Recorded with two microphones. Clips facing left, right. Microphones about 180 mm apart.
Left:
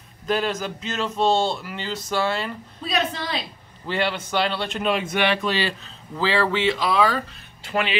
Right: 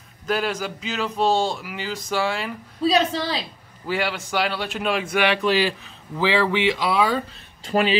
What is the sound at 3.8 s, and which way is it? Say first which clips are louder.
A man's voice: even; 5° right (ahead or behind).